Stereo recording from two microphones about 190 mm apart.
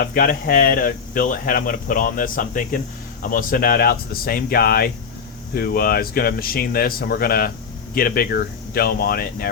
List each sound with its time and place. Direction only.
0.0 s speech: 50° left (ahead or behind)